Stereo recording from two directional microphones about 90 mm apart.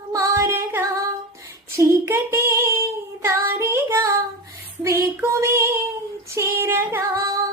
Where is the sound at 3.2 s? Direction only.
30° right (ahead or behind).